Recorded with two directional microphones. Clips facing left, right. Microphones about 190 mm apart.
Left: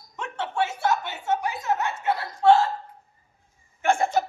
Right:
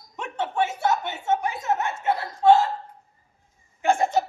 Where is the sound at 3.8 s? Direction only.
20° right (ahead or behind).